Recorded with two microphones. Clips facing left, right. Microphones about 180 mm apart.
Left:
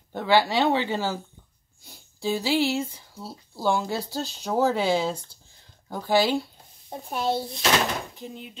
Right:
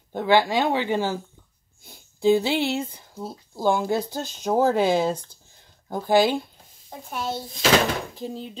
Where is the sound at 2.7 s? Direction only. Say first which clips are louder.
Even; 55° right (ahead or behind).